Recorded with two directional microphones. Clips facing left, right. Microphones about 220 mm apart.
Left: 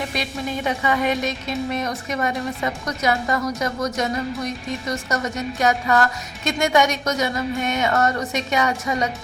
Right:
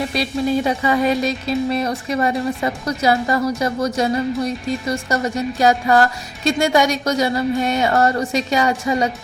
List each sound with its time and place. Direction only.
0.1 s speech: 35° right (ahead or behind)